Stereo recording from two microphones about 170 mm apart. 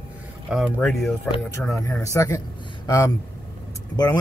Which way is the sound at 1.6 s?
15° left (ahead or behind).